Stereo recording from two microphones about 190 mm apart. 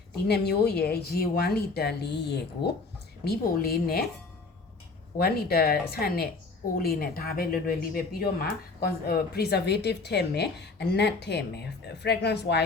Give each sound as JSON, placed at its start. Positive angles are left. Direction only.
{"t": 0.3, "sound": "a woman's voice", "side_deg": 60}
{"t": 5.1, "sound": "speech", "side_deg": 55}